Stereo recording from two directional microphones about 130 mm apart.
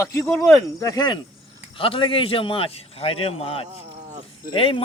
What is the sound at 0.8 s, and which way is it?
A man's voice, 30° left (ahead or behind).